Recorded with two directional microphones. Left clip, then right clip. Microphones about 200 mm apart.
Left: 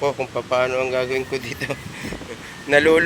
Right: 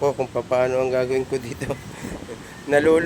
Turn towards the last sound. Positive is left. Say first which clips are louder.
# left 2 dB
turn(degrees=-15)  # may be behind; listen again after turning